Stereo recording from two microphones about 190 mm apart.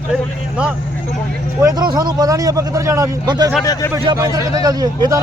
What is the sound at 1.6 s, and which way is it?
A man's voice, 20° right (ahead or behind).